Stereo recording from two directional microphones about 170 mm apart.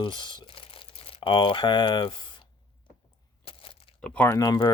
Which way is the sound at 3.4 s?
35° left (ahead or behind).